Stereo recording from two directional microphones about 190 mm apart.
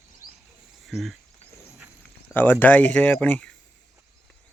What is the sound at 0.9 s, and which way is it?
Speech, centre (ahead or behind).